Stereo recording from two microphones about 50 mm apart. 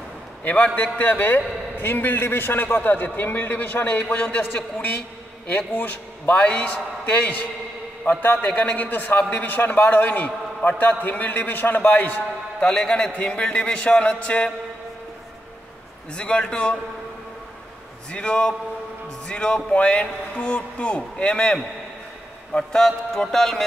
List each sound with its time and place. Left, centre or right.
0.4 s a man's voice: left
5.8 s a man's voice: left
12.5 s a man's voice: centre
16.2 s a man's voice: centre
18.1 s a man's voice: centre
22.5 s a sound: centre
22.8 s a sound: centre